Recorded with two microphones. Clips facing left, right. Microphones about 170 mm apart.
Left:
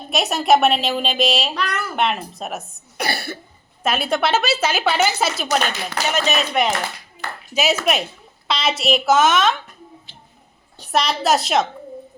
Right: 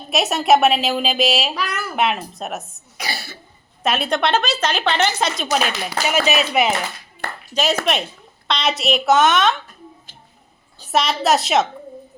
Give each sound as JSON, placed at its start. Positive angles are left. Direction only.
{"t": 0.1, "sound": "a woman's voice", "side_deg": 0}
{"t": 3.0, "sound": "cough", "side_deg": 60}
{"t": 3.8, "sound": "a woman's voice", "side_deg": 0}
{"t": 7.5, "sound": "a woman's voice", "side_deg": 5}
{"t": 10.1, "sound": "a sound", "side_deg": -45}
{"t": 10.9, "sound": "a woman's voice", "side_deg": 0}